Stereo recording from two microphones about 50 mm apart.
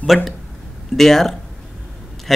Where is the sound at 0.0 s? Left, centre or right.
Centre.